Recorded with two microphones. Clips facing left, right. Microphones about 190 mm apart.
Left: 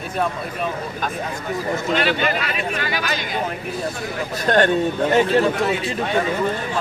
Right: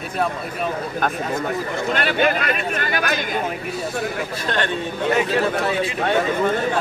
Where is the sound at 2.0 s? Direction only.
55° right (ahead or behind).